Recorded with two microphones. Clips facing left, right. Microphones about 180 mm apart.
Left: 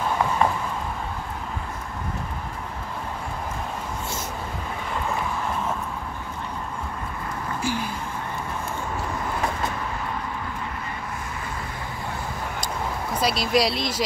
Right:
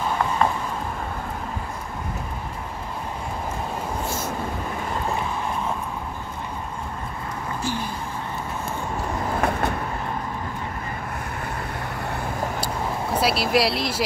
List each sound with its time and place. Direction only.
7.6 s a sound: 10° left (ahead or behind)
9.4 s vehicle: 60° right (ahead or behind)
13.2 s speech: 5° right (ahead or behind)